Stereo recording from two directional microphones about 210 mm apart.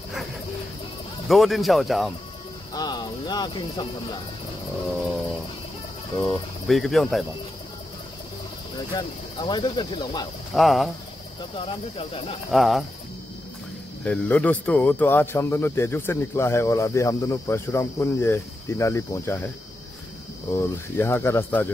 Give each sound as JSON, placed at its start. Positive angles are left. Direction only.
{"t": 1.3, "sound": "speech", "side_deg": 0}
{"t": 2.7, "sound": "insect", "side_deg": 20}
{"t": 6.1, "sound": "speech", "side_deg": 0}
{"t": 8.7, "sound": "insect", "side_deg": 20}
{"t": 10.5, "sound": "speech", "side_deg": 0}
{"t": 11.5, "sound": "insect", "side_deg": 25}
{"t": 12.4, "sound": "speech", "side_deg": 0}
{"t": 14.0, "sound": "speech", "side_deg": 5}
{"t": 20.5, "sound": "speech", "side_deg": 10}